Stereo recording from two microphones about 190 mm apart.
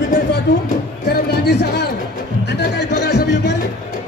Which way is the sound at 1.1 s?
60° left (ahead or behind).